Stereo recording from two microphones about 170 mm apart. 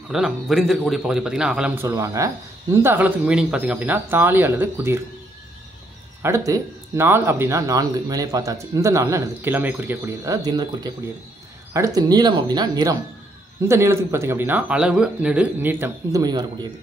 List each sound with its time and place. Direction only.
0.1 s a man's voice: centre (ahead or behind)
6.2 s a man's voice: 15° right (ahead or behind)